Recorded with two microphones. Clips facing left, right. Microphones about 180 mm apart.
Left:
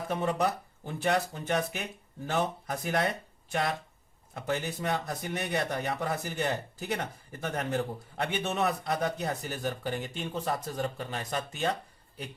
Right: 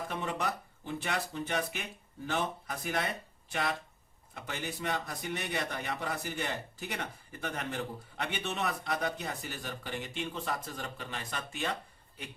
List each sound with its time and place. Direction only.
0.1 s a man's voice: 40° left (ahead or behind)
4.4 s a man's voice: 40° left (ahead or behind)